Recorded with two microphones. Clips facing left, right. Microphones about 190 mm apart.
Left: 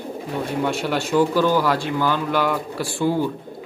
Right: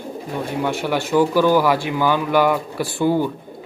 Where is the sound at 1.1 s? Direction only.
10° right (ahead or behind).